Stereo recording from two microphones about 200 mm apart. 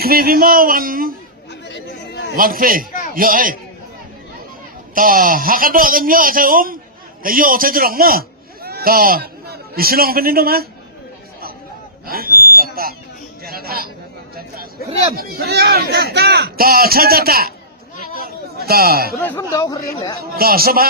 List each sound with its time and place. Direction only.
0.0 s speech: 50° right (ahead or behind)
1.7 s chatter: 55° left (ahead or behind)
2.3 s speech: 45° right (ahead or behind)
4.9 s a man's voice: 45° right (ahead or behind)
12.0 s a sound: 50° right (ahead or behind)
13.4 s chatter: 50° right (ahead or behind)
14.3 s a sound: 50° right (ahead or behind)
15.1 s speech: 50° right (ahead or behind)
18.2 s a sound: 50° right (ahead or behind)
19.1 s speech: 10° left (ahead or behind)
20.3 s speech: 50° right (ahead or behind)